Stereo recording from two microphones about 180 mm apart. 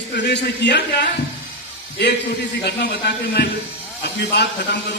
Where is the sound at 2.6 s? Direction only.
70° left (ahead or behind).